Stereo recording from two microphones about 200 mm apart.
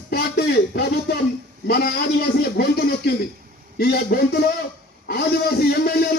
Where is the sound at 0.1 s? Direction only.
55° left (ahead or behind).